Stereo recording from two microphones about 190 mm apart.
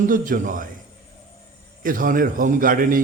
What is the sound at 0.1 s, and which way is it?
Speech, 45° right (ahead or behind).